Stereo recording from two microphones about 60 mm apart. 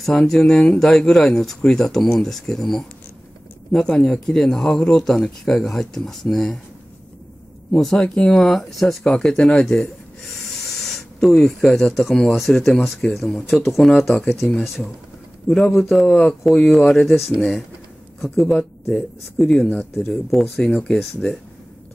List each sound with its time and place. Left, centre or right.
0.0 s speech: centre
7.7 s speech: centre
8.0 s speech: centre
10.8 s a sound: centre
11.3 s speech: centre
16.1 s speech: centre
18.3 s speech: centre